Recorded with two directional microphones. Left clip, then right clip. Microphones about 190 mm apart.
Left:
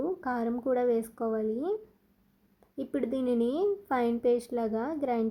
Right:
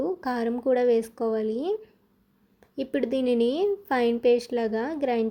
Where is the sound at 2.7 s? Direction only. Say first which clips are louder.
Right 5 dB; 15° right (ahead or behind).